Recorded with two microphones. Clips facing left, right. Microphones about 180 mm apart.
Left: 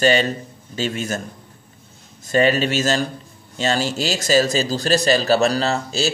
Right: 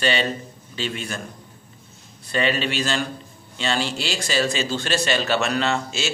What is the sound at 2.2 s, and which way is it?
A man's voice, 40° left (ahead or behind).